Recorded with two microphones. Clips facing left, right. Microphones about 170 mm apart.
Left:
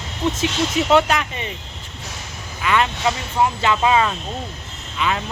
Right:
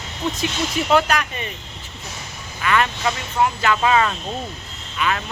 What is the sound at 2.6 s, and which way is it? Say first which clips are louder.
Speech: left 1 dB; 20° left (ahead or behind).